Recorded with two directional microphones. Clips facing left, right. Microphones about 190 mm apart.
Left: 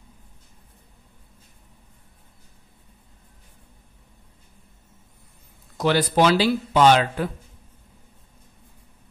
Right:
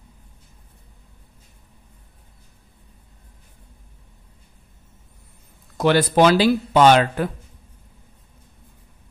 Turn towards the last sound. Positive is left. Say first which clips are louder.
# right 2 dB
turn(degrees=-55)  # may be behind; listen again after turning